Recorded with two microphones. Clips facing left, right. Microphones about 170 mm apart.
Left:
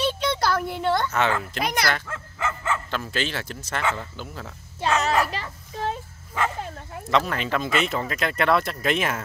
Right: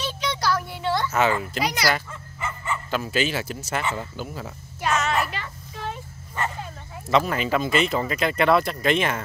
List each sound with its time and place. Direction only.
0.0 s a sound: 55° left (ahead or behind)
1.6 s speech: 55° left (ahead or behind)
2.0 s dog: 90° left
2.9 s speech: 5° right (ahead or behind)
4.8 s a sound: 35° left (ahead or behind)
7.1 s speech: 5° right (ahead or behind)